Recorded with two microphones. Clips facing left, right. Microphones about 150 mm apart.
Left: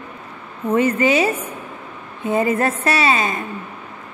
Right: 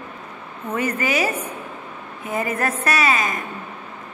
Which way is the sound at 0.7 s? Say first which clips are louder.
Left 7 dB; 25° left (ahead or behind).